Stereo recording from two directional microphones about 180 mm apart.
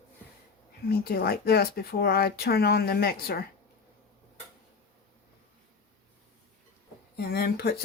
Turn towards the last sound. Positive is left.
turn(degrees=60)  # may be behind; listen again after turning